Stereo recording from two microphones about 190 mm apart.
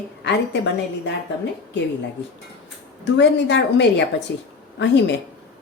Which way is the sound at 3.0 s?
65° left (ahead or behind).